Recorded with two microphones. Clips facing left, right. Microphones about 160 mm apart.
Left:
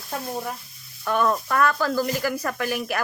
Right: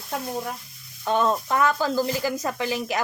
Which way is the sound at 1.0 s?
25° right (ahead or behind).